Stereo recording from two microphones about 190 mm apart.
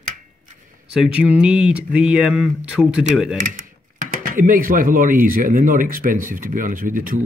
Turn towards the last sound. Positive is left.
turn(degrees=-45)  # may be behind; listen again after turning